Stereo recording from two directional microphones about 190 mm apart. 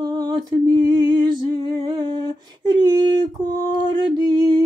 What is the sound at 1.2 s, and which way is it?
Humming, 20° right (ahead or behind).